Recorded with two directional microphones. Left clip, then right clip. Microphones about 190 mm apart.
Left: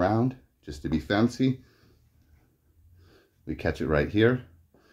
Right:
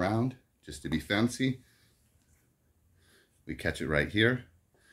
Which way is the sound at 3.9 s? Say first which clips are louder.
Left 4 dB; 15° right (ahead or behind).